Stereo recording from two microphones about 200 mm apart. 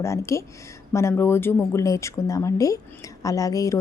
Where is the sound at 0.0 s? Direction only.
15° left (ahead or behind).